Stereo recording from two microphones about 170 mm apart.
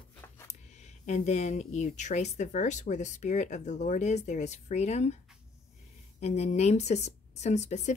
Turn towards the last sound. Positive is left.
turn(degrees=40)  # may be behind; listen again after turning